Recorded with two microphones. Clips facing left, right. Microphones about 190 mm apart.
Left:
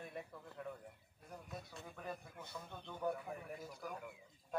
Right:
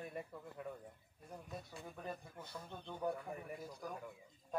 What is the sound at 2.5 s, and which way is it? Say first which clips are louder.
Speech: right 2 dB; 15° right (ahead or behind).